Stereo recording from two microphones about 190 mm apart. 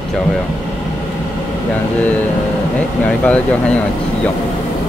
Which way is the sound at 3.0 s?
5° left (ahead or behind).